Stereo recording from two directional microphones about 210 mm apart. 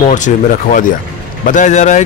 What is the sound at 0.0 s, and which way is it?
A man's voice, 35° left (ahead or behind).